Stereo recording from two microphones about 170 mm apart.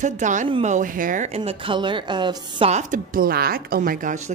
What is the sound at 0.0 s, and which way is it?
A woman's voice, 45° right (ahead or behind).